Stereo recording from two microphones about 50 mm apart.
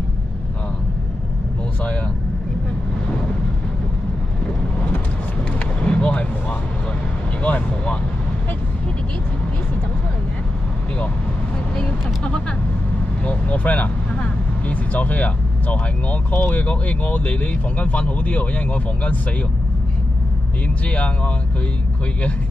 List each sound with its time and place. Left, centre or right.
5.8 s a sound: left
7.4 s vehicle: left
11.7 s vehicle: centre
16.5 s speech: left
20.8 s speech: left